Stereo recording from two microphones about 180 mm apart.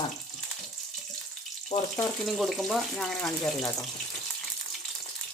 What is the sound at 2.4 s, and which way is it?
Speech, centre (ahead or behind).